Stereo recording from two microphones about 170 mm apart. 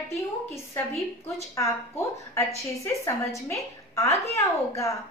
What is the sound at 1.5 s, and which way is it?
A woman's voice, 15° left (ahead or behind).